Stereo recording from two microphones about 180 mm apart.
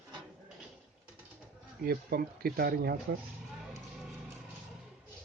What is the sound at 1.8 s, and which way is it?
Speech, 60° right (ahead or behind).